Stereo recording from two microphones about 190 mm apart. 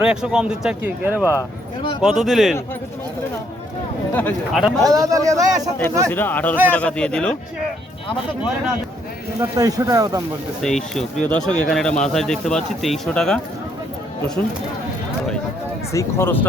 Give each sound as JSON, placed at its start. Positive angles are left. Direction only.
{"t": 0.0, "sound": "speech", "side_deg": -5}
{"t": 1.3, "sound": "speech", "side_deg": 20}
{"t": 2.0, "sound": "speech", "side_deg": 0}
{"t": 4.1, "sound": "speech", "side_deg": 10}
{"t": 4.8, "sound": "a man's voice", "side_deg": -20}
{"t": 6.1, "sound": "speech", "side_deg": 10}
{"t": 9.4, "sound": "speech", "side_deg": -15}
{"t": 10.6, "sound": "speech", "side_deg": 0}
{"t": 15.9, "sound": "speech", "side_deg": 15}